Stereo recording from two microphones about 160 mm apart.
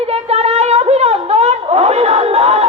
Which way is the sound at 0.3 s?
40° right (ahead or behind).